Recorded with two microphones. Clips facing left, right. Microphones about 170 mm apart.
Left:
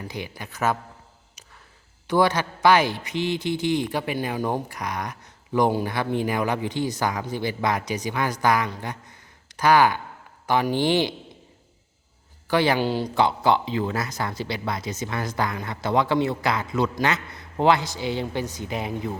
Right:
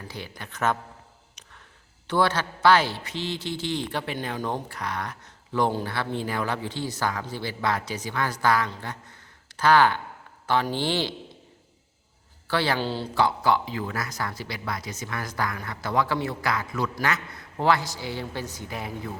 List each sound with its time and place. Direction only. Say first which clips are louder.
0.0 s a man's voice: left 4 dB; 15° left (ahead or behind)
2.0 s a man's voice: left 3 dB; 15° left (ahead or behind)
12.5 s speech: left 5 dB; 15° left (ahead or behind)